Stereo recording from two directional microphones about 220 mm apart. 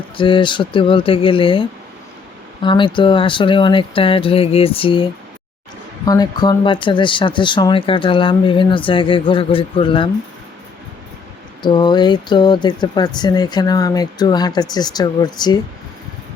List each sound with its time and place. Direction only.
0.2 s speech: 20° left (ahead or behind)
6.1 s speech: 20° left (ahead or behind)
11.6 s speech: 20° left (ahead or behind)